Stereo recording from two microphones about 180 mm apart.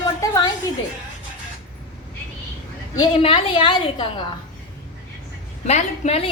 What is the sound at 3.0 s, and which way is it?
A woman's voice, 30° left (ahead or behind).